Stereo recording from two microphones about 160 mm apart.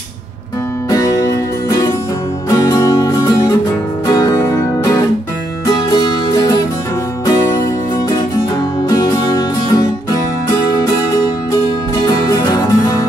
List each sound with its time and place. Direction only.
0.8 s music: 20° left (ahead or behind)
2.5 s music: 20° left (ahead or behind)
8.8 s music: 25° left (ahead or behind)
12.1 s music: 20° left (ahead or behind)